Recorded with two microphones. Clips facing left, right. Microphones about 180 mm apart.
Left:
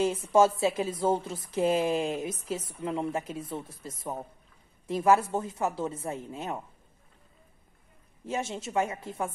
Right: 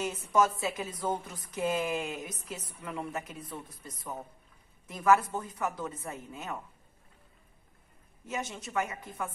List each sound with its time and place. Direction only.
0.0 s a woman's voice: 30° left (ahead or behind)
8.3 s a woman's voice: 25° left (ahead or behind)